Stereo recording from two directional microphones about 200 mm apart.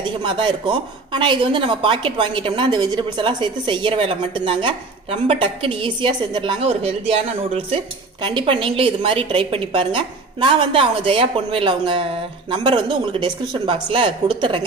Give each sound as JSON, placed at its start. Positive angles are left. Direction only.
{"t": 0.0, "sound": "a woman's voice", "side_deg": -25}